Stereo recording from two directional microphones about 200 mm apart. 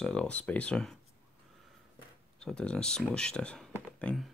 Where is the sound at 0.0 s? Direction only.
5° left (ahead or behind).